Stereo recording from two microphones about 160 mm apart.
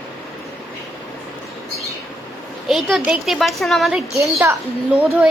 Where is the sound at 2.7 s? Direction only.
Centre (ahead or behind).